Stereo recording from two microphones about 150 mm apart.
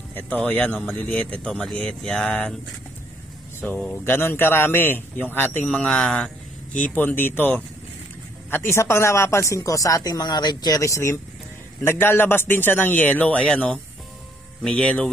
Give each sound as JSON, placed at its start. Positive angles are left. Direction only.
{"t": 0.1, "sound": "speech", "side_deg": 10}
{"t": 3.6, "sound": "speech", "side_deg": 5}